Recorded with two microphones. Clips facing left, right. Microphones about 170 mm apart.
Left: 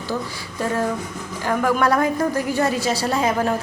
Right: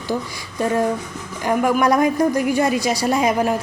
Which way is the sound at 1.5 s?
15° right (ahead or behind).